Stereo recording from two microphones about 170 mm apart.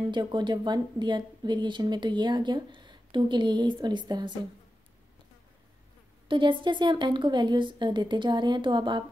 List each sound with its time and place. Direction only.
0.1 s speech: 25° right (ahead or behind)
6.2 s speech: 30° right (ahead or behind)